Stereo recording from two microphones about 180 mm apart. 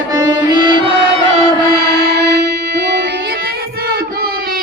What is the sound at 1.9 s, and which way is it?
Music, 65° right (ahead or behind).